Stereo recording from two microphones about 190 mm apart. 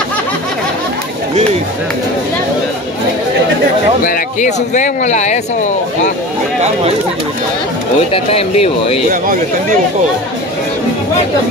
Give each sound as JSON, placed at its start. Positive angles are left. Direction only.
{"t": 4.0, "sound": "speech", "side_deg": 45}
{"t": 8.1, "sound": "speech", "side_deg": 30}
{"t": 9.1, "sound": "speech", "side_deg": -45}